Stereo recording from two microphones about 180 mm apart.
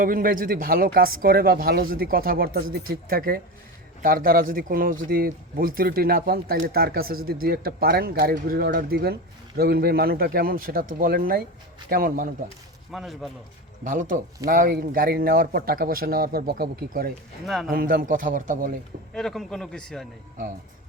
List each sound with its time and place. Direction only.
0.0 s a man's voice: 50° right (ahead or behind)
12.9 s a man's voice: centre (ahead or behind)
13.8 s a man's voice: 45° right (ahead or behind)
17.4 s a man's voice: centre (ahead or behind)
17.7 s speech: 55° right (ahead or behind)
19.1 s a man's voice: centre (ahead or behind)